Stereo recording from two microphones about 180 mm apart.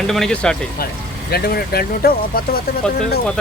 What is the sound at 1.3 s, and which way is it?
Speech, 60° left (ahead or behind).